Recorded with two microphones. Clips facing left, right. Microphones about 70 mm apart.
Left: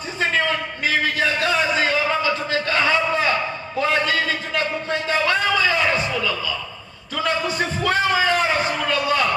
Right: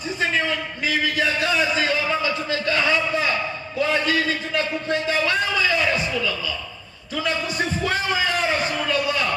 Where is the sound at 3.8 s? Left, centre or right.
Left.